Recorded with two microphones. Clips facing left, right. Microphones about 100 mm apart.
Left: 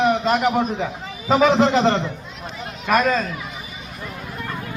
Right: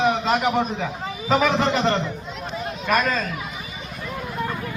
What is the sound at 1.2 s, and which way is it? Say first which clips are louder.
Speech: left 4 dB; 20° left (ahead or behind).